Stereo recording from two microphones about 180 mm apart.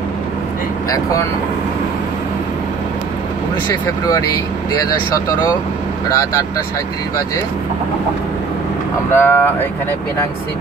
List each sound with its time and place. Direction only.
0.8 s speech: 20° left (ahead or behind)
6.0 s speech: 15° left (ahead or behind)
9.1 s speech: 10° left (ahead or behind)